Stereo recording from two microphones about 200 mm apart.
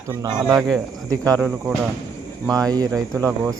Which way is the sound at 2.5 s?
20° right (ahead or behind).